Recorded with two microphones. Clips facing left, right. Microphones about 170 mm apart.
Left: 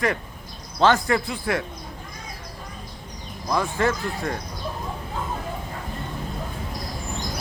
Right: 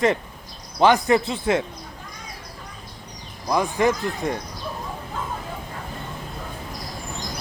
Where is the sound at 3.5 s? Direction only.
15° right (ahead or behind).